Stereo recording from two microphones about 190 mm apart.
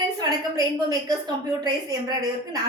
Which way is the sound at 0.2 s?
20° right (ahead or behind).